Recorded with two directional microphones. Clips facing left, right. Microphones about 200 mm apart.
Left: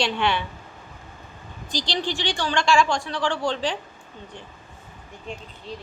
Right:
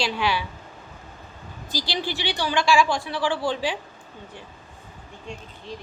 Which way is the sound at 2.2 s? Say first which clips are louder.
Even; 10° right (ahead or behind).